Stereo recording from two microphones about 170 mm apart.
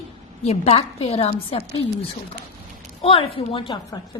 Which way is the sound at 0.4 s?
40° left (ahead or behind).